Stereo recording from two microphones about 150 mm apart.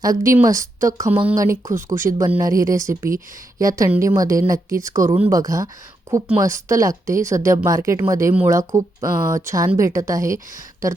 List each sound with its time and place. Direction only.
0.0 s a woman's voice: 20° right (ahead or behind)